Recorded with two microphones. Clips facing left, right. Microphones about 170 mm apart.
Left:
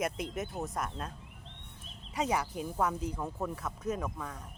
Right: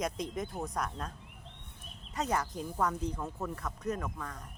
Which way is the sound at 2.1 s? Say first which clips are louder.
Left 1 dB; 10° left (ahead or behind).